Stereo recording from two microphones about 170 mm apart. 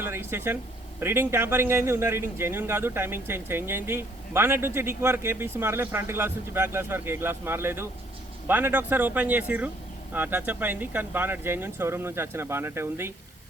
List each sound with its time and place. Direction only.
0.0 s speech: 15° right (ahead or behind)